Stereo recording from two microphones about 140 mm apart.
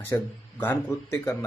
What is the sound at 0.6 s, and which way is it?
Speech, 15° left (ahead or behind).